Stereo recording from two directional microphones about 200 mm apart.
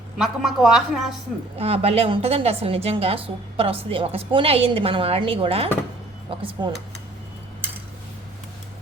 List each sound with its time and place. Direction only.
0.2 s a woman's voice: centre (ahead or behind)
1.5 s a woman's voice: 30° right (ahead or behind)